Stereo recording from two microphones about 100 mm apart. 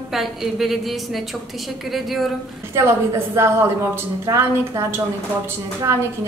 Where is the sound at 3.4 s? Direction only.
25° right (ahead or behind).